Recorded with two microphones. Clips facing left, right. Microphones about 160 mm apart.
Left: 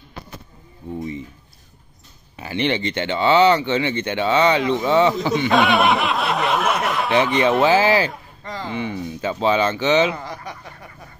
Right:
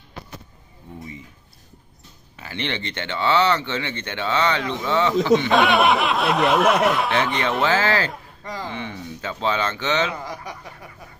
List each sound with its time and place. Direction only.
2.3 s speech: 15° left (ahead or behind)
5.5 s speech: centre (ahead or behind)
10.1 s speech: 10° right (ahead or behind)